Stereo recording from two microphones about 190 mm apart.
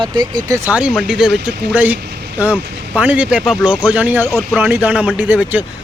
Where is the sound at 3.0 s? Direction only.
5° right (ahead or behind).